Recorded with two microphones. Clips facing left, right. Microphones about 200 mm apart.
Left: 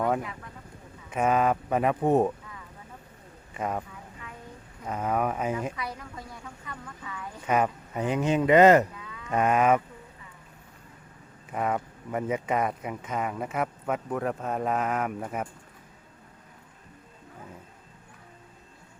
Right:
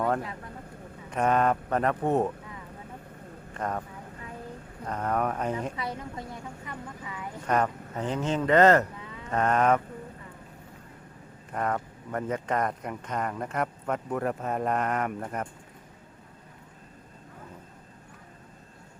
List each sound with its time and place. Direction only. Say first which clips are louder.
1.1 s speech: even; 5° left (ahead or behind)
3.5 s speech: left 1 dB; 10° left (ahead or behind)
4.9 s speech: left 1 dB; 5° left (ahead or behind)
5.7 s speech: right 3 dB; 25° right (ahead or behind)
7.4 s speech: left 1 dB; 10° left (ahead or behind)
11.5 s speech: left 1 dB; 5° left (ahead or behind)